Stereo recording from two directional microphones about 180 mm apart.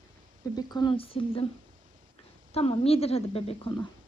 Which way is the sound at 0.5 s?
25° left (ahead or behind).